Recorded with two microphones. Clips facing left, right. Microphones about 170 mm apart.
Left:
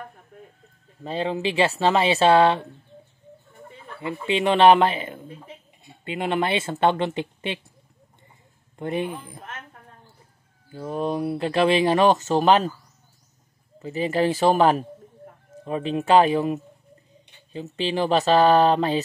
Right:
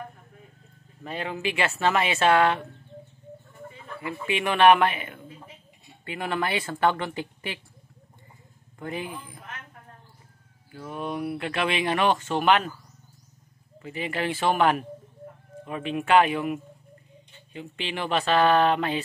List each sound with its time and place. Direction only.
1.0 s speech: 30° left (ahead or behind)
4.0 s speech: 30° left (ahead or behind)
8.7 s speech: 25° left (ahead or behind)
10.7 s speech: 30° left (ahead or behind)
13.7 s speech: 35° left (ahead or behind)